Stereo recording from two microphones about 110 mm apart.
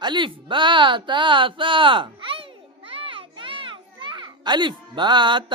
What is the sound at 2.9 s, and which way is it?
Children playing, 55° right (ahead or behind).